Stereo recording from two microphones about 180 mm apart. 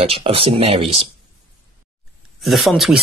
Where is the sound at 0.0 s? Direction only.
30° right (ahead or behind).